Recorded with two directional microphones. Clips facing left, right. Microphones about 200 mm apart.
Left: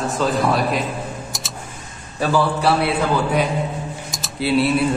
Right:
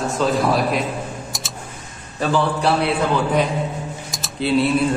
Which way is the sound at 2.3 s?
5° left (ahead or behind).